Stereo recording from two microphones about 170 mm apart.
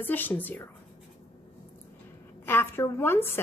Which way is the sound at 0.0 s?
10° left (ahead or behind).